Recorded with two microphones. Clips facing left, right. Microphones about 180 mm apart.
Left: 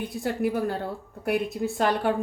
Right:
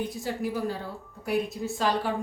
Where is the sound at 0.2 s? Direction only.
60° left (ahead or behind).